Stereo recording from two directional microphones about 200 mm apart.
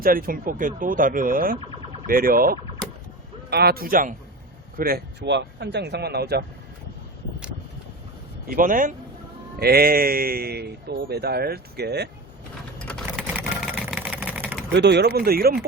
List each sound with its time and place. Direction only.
0.0 s speech: 45° right (ahead or behind)
8.4 s speech: 45° right (ahead or behind)
13.3 s vehicle: 5° right (ahead or behind)
14.7 s speech: 60° right (ahead or behind)